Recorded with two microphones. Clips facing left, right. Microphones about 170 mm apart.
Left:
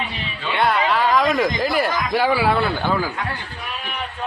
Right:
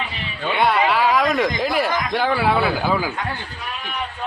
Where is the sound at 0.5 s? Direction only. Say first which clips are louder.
Right 1 dB; centre (ahead or behind).